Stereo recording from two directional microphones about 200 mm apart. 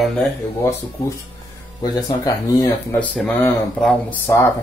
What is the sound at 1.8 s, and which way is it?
Speech, 20° left (ahead or behind).